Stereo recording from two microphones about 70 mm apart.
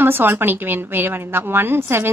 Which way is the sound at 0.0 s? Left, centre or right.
Right.